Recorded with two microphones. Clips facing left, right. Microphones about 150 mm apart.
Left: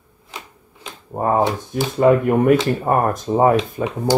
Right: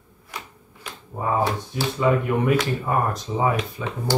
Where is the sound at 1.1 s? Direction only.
50° left (ahead or behind).